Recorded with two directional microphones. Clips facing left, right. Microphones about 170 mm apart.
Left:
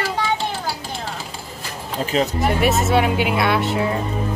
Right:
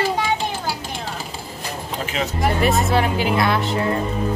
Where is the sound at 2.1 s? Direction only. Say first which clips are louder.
Left 6 dB; 35° left (ahead or behind).